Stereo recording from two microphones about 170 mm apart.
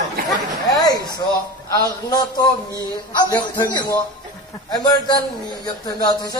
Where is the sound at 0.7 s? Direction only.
25° left (ahead or behind).